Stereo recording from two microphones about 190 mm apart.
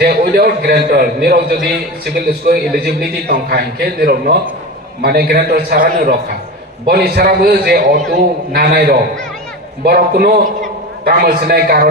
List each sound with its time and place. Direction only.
0.0 s a man's voice: 55° right (ahead or behind)